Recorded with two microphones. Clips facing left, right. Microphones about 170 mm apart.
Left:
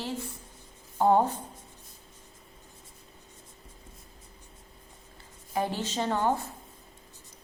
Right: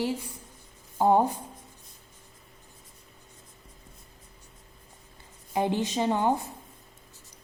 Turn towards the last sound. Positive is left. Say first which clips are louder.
# right 2 dB
turn(degrees=-15)  # may be behind; listen again after turning